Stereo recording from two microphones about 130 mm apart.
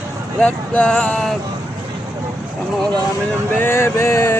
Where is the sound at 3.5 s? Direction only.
15° left (ahead or behind).